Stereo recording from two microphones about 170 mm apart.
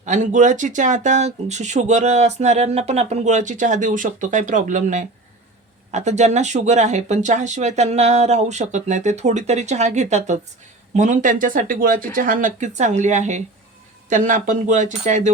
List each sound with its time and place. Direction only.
0.0 s speech: 45° right (ahead or behind)